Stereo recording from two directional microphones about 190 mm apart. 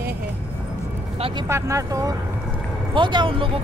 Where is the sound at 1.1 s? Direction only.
25° right (ahead or behind).